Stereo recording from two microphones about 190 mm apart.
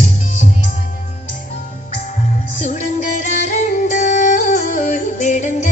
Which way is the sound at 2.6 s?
40° left (ahead or behind).